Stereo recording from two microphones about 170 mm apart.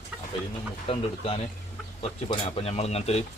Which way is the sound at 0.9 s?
35° left (ahead or behind).